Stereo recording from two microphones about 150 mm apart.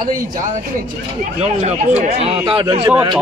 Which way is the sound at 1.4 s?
45° right (ahead or behind).